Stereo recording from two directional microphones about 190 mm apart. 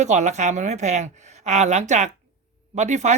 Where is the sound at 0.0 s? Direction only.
40° right (ahead or behind).